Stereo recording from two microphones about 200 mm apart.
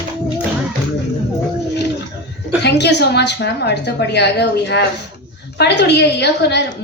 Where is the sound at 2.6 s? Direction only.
60° left (ahead or behind).